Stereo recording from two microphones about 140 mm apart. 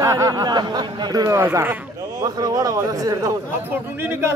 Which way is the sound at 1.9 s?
30° right (ahead or behind).